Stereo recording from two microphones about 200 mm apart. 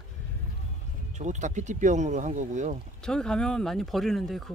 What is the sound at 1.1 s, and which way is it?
Speech, 35° right (ahead or behind).